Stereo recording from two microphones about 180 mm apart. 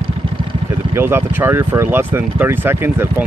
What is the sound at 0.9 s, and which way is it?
Speech, 10° right (ahead or behind).